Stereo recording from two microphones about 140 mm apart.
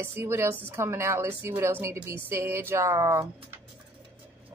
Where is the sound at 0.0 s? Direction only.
15° right (ahead or behind).